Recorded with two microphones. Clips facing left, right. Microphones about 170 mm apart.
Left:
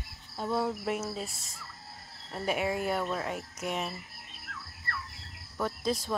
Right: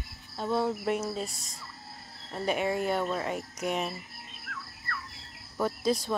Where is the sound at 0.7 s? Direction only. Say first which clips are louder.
Right 3 dB; centre (ahead or behind).